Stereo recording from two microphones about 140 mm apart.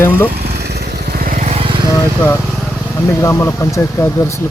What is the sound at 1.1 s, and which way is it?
Vehicle, 80° right.